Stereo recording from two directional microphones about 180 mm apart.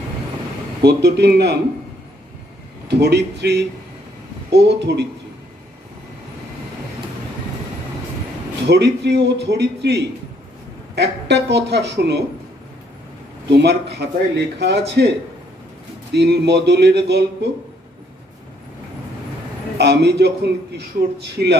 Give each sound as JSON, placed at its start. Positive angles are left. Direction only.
{"t": 0.8, "sound": "a man's voice", "side_deg": -65}
{"t": 2.9, "sound": "a man's voice", "side_deg": -65}
{"t": 8.6, "sound": "a man's voice", "side_deg": -70}
{"t": 13.5, "sound": "a man's voice", "side_deg": -65}
{"t": 19.8, "sound": "a man's voice", "side_deg": -70}